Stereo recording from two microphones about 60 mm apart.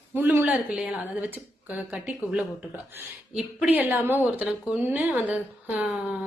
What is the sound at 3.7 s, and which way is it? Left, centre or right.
Speech, right.